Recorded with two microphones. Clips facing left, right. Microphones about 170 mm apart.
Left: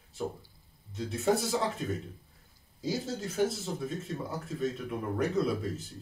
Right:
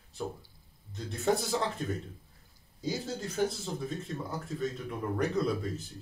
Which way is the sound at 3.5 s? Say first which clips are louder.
Left 1 dB; 5° left (ahead or behind).